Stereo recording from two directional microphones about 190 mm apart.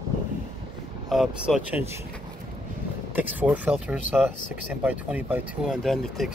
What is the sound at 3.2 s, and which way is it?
Speech, 10° right (ahead or behind).